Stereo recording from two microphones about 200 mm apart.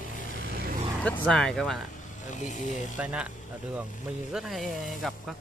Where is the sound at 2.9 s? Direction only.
5° right (ahead or behind).